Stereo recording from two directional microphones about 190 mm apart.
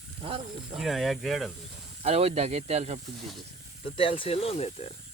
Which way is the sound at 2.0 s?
35° right (ahead or behind).